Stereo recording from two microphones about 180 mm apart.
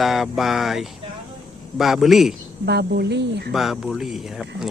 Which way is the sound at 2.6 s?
65° right (ahead or behind).